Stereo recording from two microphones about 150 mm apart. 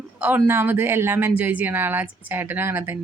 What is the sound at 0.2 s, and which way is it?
Speech, 10° right (ahead or behind).